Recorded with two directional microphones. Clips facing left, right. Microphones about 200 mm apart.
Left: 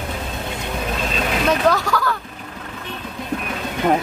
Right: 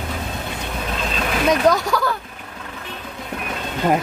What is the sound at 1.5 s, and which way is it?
Speech, 20° right (ahead or behind).